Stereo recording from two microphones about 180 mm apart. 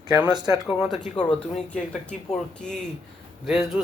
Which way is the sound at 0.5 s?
30° left (ahead or behind).